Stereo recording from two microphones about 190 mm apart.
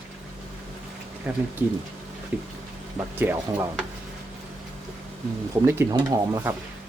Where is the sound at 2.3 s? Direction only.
10° right (ahead or behind).